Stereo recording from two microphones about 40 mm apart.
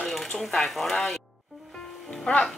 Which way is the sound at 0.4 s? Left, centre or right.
Centre.